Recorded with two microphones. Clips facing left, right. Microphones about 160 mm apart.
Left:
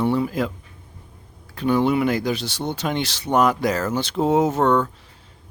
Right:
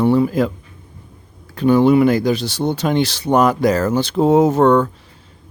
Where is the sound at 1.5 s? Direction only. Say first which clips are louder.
Right 7 dB; 40° right (ahead or behind).